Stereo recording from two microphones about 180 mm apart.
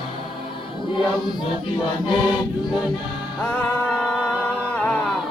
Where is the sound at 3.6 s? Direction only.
5° left (ahead or behind).